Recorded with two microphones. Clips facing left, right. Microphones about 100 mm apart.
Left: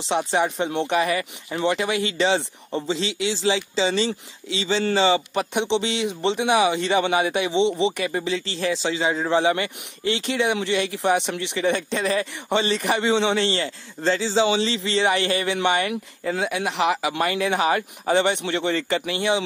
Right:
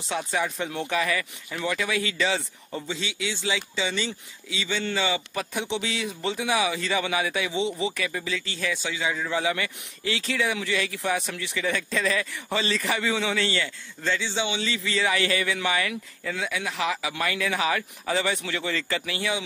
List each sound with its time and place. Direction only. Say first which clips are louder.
0.1 s a man's voice: left 6 dB; 30° left (ahead or behind)
5.5 s speech: left 7 dB; 65° left (ahead or behind)
5.8 s a man's voice: left 6 dB; 25° left (ahead or behind)
16.9 s speech: left 6 dB; 65° left (ahead or behind)
17.2 s a man's voice: left 3 dB; 30° left (ahead or behind)